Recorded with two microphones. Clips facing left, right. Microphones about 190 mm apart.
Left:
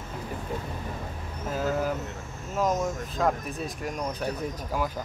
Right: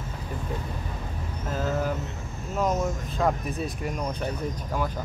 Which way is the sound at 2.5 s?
Centre (ahead or behind).